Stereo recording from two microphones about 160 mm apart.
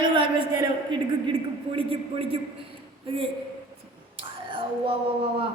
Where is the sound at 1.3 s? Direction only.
35° right (ahead or behind).